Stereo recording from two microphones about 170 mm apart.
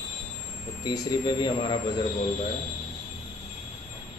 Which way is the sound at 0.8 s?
25° left (ahead or behind).